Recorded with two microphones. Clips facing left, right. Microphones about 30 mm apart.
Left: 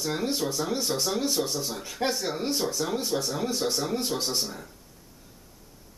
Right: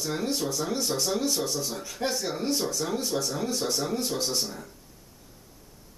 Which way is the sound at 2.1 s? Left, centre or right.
Centre.